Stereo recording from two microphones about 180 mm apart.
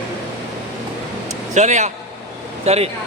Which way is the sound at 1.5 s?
40° right (ahead or behind).